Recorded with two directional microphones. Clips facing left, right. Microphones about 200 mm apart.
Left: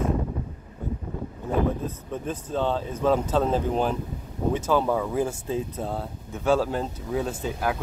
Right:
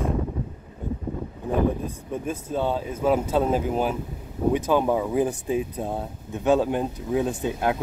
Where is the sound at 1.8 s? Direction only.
10° right (ahead or behind).